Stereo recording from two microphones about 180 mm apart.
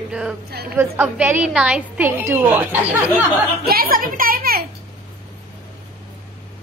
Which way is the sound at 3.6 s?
55° right (ahead or behind).